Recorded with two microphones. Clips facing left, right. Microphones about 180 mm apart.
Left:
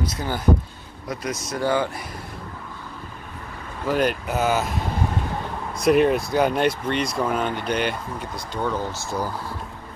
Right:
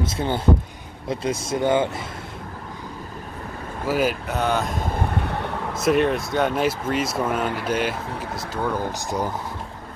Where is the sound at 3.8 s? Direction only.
5° right (ahead or behind).